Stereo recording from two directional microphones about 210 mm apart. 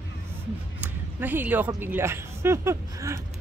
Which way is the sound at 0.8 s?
10° right (ahead or behind).